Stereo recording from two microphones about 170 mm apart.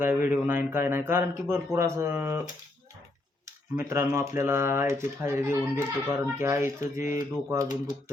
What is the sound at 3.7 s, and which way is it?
Speech, 15° right (ahead or behind).